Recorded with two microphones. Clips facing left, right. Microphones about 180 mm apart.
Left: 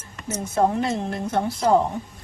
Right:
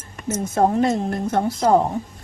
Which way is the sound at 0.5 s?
45° right (ahead or behind).